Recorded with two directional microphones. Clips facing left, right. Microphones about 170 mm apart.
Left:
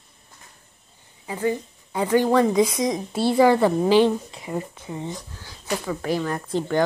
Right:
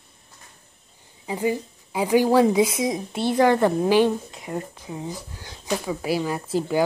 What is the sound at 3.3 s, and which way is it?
Speech, 5° left (ahead or behind).